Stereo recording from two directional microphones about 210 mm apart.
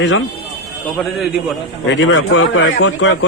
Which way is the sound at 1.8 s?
65° left (ahead or behind).